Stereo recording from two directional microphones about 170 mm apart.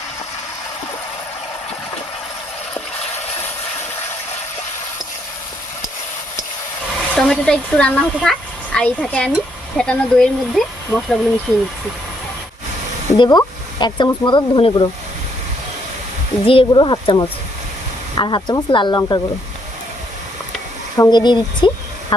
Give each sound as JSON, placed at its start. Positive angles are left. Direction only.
{"t": 7.2, "sound": "speech", "side_deg": 5}
{"t": 13.1, "sound": "speech", "side_deg": 25}
{"t": 16.5, "sound": "speech", "side_deg": 30}
{"t": 20.9, "sound": "speech", "side_deg": 25}